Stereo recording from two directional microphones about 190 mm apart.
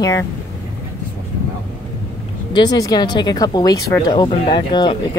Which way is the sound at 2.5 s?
20° left (ahead or behind).